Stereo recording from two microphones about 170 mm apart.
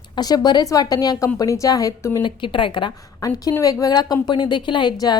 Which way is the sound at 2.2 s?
30° left (ahead or behind).